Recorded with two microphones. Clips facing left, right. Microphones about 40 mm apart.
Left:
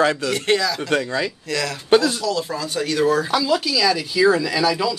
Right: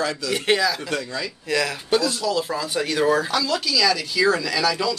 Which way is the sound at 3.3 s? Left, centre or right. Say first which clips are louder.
Left 3 dB; centre.